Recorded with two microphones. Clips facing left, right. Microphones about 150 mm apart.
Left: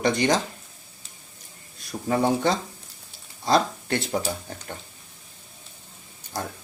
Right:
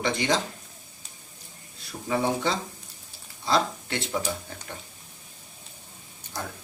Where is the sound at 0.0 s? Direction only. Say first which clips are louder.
Left 4 dB; 45° left (ahead or behind).